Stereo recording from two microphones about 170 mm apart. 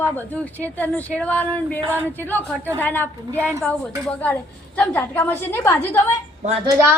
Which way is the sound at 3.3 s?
15° right (ahead or behind).